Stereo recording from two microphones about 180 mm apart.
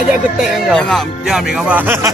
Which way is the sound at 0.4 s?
Centre (ahead or behind).